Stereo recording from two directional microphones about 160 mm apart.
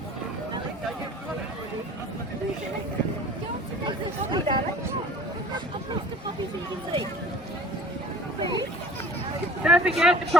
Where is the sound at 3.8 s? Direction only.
30° right (ahead or behind).